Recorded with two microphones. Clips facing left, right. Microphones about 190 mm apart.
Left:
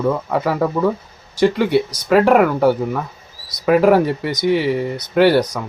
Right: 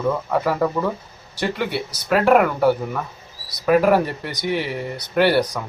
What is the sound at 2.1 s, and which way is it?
Speech, 5° left (ahead or behind).